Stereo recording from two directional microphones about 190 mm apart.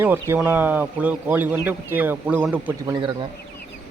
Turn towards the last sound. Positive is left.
turn(degrees=-20)  # may be behind; listen again after turning